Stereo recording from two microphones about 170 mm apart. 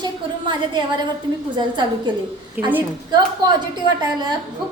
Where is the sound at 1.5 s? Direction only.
25° right (ahead or behind).